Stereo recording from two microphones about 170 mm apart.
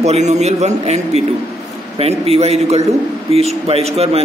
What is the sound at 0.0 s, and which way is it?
A man's voice, 40° right (ahead or behind).